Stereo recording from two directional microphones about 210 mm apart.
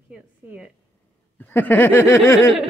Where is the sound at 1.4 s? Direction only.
10° left (ahead or behind).